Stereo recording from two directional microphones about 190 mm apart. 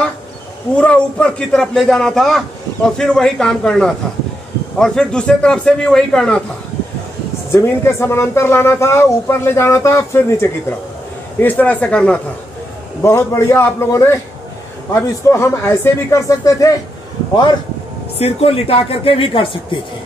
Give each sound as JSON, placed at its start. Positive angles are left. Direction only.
{"t": 0.7, "sound": "a man's voice", "side_deg": 5}
{"t": 7.5, "sound": "speech", "side_deg": 15}
{"t": 18.2, "sound": "speech", "side_deg": 30}